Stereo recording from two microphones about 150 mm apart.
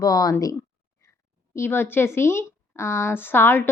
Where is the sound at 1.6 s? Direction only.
15° left (ahead or behind).